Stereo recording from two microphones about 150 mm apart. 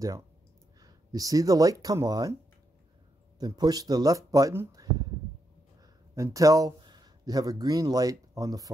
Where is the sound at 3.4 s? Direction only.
25° right (ahead or behind).